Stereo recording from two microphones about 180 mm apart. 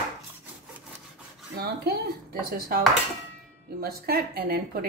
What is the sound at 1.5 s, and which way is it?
A woman's voice, 60° right (ahead or behind).